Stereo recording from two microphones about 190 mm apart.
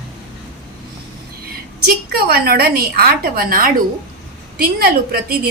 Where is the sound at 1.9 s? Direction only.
55° right (ahead or behind).